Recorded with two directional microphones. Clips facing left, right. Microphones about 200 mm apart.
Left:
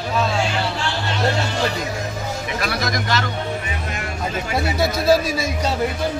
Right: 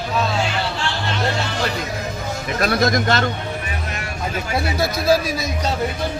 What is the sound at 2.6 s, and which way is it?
Speech, 50° right (ahead or behind).